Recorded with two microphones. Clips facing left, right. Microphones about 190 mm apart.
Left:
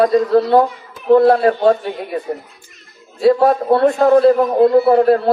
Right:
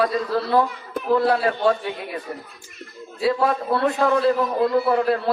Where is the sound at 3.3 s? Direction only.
35° left (ahead or behind).